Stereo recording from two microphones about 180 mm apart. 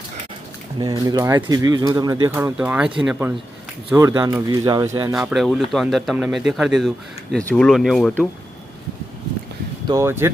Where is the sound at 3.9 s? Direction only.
20° right (ahead or behind).